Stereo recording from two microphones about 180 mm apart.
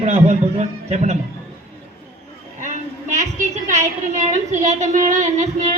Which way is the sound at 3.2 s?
40° right (ahead or behind).